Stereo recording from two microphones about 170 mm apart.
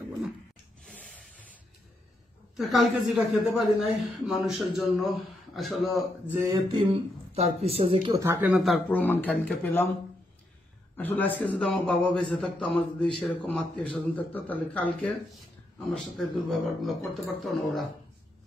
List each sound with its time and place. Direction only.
0.8 s a sound: 5° left (ahead or behind)
2.7 s a man's voice: centre (ahead or behind)
6.3 s a sound: 20° right (ahead or behind)
7.3 s a woman's voice: 35° right (ahead or behind)
8.1 s speech: 15° right (ahead or behind)
8.8 s a man's voice: 10° left (ahead or behind)
11.0 s a man's voice: 10° left (ahead or behind)
16.2 s a man's voice: centre (ahead or behind)